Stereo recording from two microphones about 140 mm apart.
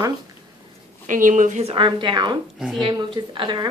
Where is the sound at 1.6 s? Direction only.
35° right (ahead or behind).